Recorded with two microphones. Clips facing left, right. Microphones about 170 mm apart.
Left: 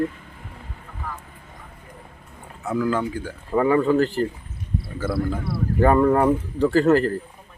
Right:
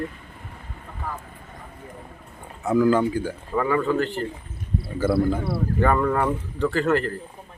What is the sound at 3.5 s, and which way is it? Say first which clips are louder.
Speech: left 4 dB; 30° left (ahead or behind).